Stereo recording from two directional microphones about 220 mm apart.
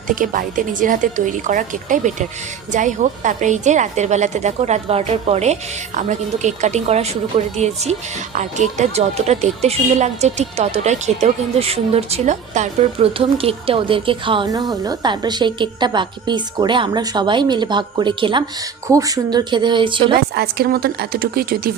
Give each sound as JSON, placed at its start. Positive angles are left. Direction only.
{"t": 0.2, "sound": "a woman's voice", "side_deg": -35}
{"t": 20.1, "sound": "a woman's voice", "side_deg": -45}